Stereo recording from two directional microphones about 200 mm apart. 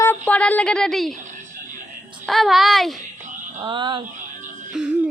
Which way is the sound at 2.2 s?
Centre (ahead or behind).